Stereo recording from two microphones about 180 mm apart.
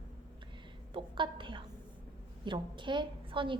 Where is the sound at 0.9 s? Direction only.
25° right (ahead or behind).